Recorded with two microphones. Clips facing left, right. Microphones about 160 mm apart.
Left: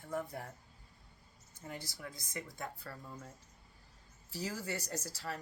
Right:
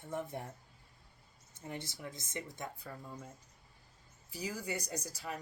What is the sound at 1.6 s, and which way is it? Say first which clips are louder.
Speech: right 2 dB; 20° right (ahead or behind).